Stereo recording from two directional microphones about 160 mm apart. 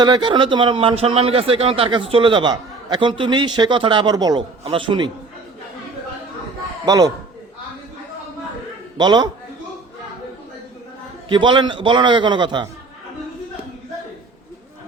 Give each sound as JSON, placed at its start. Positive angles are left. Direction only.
{"t": 0.0, "sound": "a man's voice", "side_deg": -30}
{"t": 6.8, "sound": "a man's voice", "side_deg": -25}
{"t": 9.0, "sound": "a man's voice", "side_deg": -25}
{"t": 11.3, "sound": "a man's voice", "side_deg": -30}